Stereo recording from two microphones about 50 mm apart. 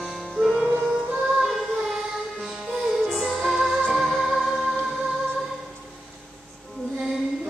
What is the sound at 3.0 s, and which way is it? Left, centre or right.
Music, centre.